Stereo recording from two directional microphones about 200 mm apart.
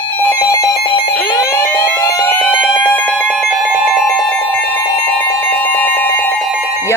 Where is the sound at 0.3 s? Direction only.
15° left (ahead or behind).